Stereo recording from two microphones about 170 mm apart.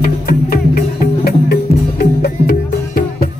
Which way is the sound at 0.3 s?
60° left (ahead or behind).